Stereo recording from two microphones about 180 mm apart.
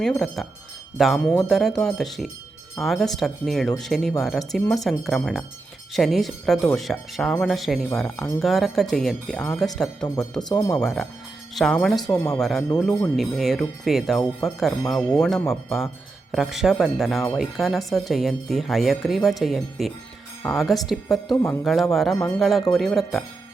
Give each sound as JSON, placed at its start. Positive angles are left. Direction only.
{"t": 0.0, "sound": "speech", "side_deg": 5}
{"t": 10.5, "sound": "speech", "side_deg": 20}
{"t": 10.8, "sound": "speech", "side_deg": 0}
{"t": 12.1, "sound": "speech", "side_deg": 10}
{"t": 12.4, "sound": "speech", "side_deg": 0}